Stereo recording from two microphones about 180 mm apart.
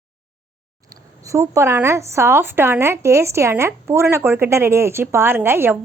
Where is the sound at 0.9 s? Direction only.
15° right (ahead or behind).